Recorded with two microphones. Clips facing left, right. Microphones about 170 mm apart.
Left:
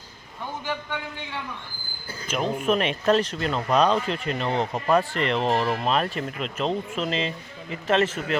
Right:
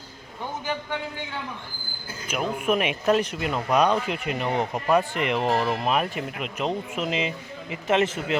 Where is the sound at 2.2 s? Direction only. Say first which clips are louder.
Left 1 dB; 10° right (ahead or behind).